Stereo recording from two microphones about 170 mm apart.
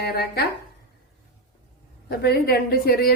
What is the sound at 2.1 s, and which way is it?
A woman's voice, 70° left (ahead or behind).